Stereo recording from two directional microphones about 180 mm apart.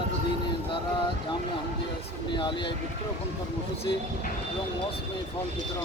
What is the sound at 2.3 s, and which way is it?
Speech, 25° left (ahead or behind).